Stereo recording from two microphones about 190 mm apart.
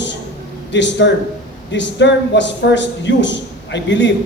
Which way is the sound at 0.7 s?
70° left (ahead or behind).